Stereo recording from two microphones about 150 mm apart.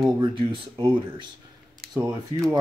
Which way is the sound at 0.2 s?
35° right (ahead or behind).